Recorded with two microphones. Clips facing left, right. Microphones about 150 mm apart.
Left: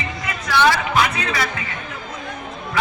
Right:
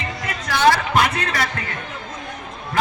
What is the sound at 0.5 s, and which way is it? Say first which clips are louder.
Music: right 1 dB; 45° right (ahead or behind).